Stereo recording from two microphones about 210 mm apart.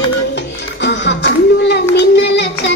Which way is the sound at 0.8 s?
55° left (ahead or behind).